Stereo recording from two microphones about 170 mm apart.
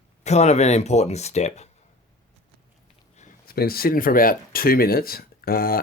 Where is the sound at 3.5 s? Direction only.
60° left (ahead or behind).